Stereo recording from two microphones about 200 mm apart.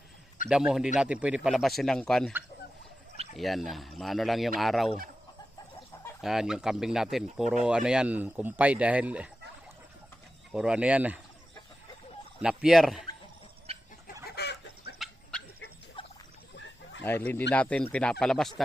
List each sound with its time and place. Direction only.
0.4 s speech: 5° right (ahead or behind)
3.3 s speech: centre (ahead or behind)
6.2 s speech: centre (ahead or behind)
10.5 s speech: 5° right (ahead or behind)
12.4 s speech: 5° right (ahead or behind)
13.7 s chicken: 30° right (ahead or behind)
14.3 s chicken: 55° left (ahead or behind)
14.9 s dog: centre (ahead or behind)
16.0 s rodents: 25° left (ahead or behind)
17.0 s speech: 10° left (ahead or behind)